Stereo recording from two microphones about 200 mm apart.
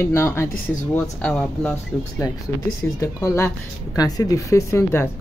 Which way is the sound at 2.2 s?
20° left (ahead or behind).